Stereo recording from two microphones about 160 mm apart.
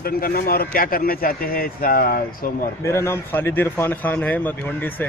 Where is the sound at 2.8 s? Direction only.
15° left (ahead or behind).